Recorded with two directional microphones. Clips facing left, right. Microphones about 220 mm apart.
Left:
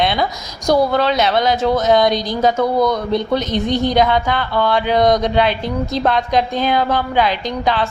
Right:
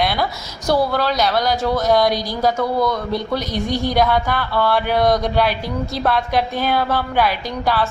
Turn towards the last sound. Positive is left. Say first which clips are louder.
# left 2 dB
turn(degrees=15)  # may be behind; listen again after turning